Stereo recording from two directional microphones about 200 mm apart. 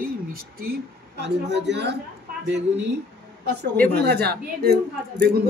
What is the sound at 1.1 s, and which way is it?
A woman's voice, 60° right (ahead or behind).